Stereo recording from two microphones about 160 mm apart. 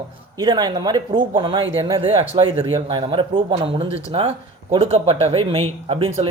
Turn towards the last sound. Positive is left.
turn(degrees=-35)  # may be behind; listen again after turning